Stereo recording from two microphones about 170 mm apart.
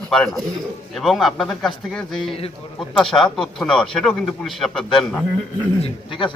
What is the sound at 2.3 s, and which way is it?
Speech, 35° left (ahead or behind).